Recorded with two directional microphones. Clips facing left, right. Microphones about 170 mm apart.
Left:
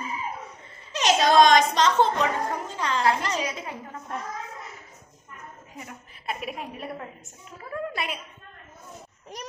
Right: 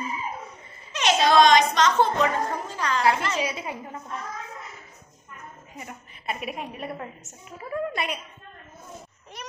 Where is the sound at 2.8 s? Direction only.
25° left (ahead or behind).